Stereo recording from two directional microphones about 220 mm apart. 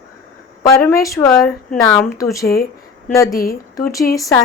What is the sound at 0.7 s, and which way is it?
Speech, 15° left (ahead or behind).